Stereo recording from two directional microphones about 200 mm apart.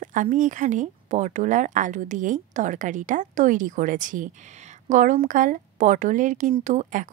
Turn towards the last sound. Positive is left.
turn(degrees=-40)  # may be behind; listen again after turning